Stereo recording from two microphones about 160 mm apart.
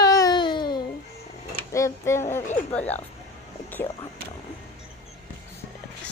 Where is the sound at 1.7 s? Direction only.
20° left (ahead or behind).